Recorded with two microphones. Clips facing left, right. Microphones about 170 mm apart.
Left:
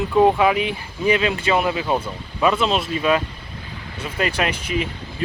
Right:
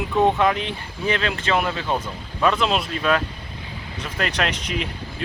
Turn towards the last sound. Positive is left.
turn(degrees=0)  # may be behind; listen again after turning